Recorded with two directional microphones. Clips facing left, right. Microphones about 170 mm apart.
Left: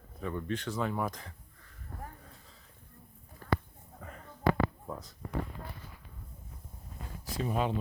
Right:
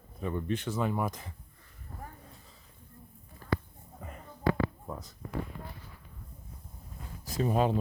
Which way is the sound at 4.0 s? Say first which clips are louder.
Right 2 dB; 15° right (ahead or behind).